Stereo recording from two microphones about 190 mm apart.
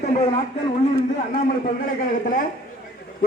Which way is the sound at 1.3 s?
45° left (ahead or behind).